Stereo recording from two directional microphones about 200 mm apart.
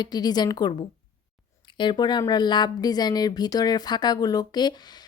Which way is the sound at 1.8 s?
20° left (ahead or behind).